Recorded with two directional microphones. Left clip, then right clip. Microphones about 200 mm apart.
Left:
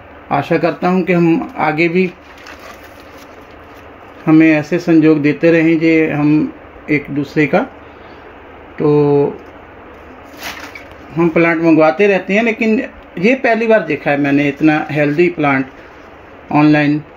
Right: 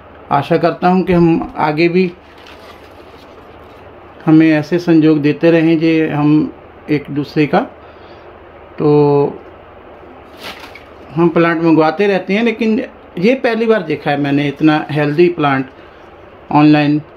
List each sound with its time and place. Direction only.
0.3 s speech: 10° right (ahead or behind)
4.3 s speech: 10° right (ahead or behind)
8.7 s speech: 5° right (ahead or behind)
11.1 s speech: 10° right (ahead or behind)